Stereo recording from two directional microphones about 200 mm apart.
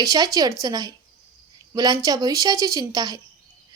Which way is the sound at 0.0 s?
15° right (ahead or behind).